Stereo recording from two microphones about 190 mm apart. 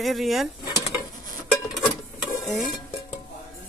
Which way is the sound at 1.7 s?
Centre (ahead or behind).